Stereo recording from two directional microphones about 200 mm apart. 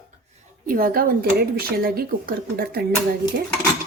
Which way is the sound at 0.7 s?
45° right (ahead or behind).